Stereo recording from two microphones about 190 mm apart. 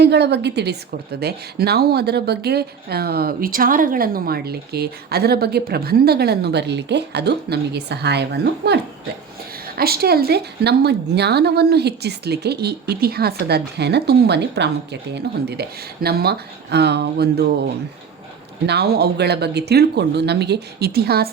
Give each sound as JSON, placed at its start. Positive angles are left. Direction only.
{"t": 0.0, "sound": "speech", "side_deg": -65}
{"t": 18.6, "sound": "speech", "side_deg": -60}